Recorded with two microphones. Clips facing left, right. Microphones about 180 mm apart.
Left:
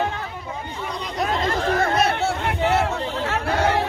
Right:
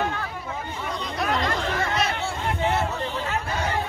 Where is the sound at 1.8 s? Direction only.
50° left (ahead or behind).